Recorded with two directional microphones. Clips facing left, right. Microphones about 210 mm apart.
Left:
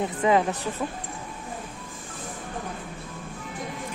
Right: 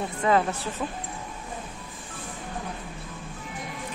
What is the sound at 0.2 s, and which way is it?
Speech, 15° left (ahead or behind).